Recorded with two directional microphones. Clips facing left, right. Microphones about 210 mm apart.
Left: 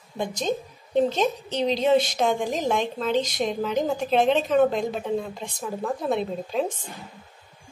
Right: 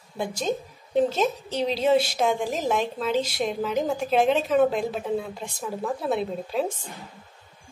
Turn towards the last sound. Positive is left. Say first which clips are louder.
# left 1 dB
turn(degrees=-5)  # may be behind; listen again after turning